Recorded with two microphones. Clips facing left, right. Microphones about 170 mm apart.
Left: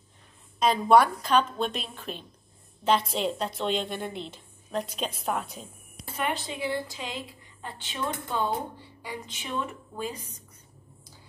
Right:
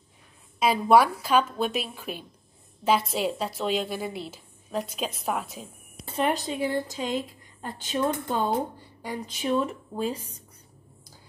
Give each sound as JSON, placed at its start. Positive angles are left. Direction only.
{"t": 0.6, "sound": "a woman's voice", "side_deg": -5}
{"t": 6.1, "sound": "a woman's voice", "side_deg": -40}